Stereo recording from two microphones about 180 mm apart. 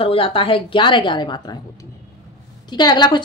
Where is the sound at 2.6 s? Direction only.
25° left (ahead or behind).